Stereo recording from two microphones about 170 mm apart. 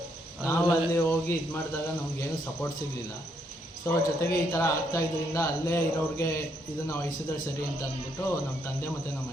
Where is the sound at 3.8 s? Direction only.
15° left (ahead or behind).